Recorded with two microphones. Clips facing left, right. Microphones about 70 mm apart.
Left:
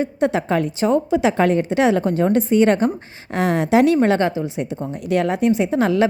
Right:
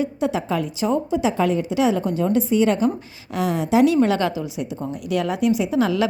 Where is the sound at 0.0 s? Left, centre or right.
Left.